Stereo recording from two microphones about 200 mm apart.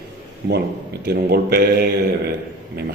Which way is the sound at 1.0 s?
55° right (ahead or behind).